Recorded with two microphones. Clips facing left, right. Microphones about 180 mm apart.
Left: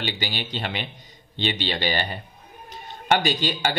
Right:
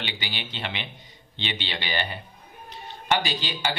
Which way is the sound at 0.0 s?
40° left (ahead or behind).